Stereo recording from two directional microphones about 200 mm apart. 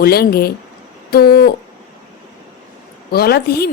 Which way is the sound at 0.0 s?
50° left (ahead or behind).